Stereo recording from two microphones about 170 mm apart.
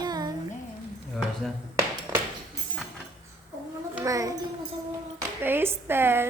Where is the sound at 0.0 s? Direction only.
25° right (ahead or behind).